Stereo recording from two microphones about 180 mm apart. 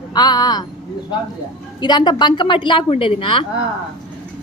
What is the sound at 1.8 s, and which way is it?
A woman's voice, 25° left (ahead or behind).